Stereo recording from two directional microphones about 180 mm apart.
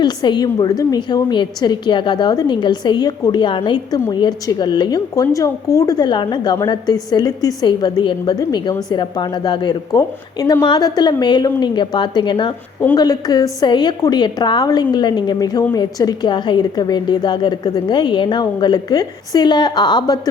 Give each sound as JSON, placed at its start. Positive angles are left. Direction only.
{"t": 0.0, "sound": "a woman's voice", "side_deg": 25}